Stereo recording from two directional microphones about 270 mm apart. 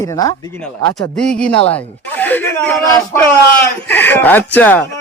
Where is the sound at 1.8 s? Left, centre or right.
Centre.